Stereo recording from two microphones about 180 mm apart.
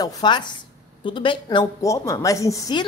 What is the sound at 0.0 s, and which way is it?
Speech, 20° left (ahead or behind).